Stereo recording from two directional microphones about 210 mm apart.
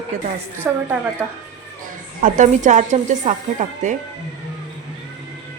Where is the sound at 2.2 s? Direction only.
35° right (ahead or behind).